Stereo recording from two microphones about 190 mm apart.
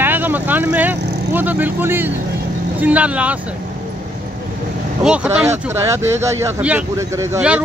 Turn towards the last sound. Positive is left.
turn(degrees=-10)  # may be behind; listen again after turning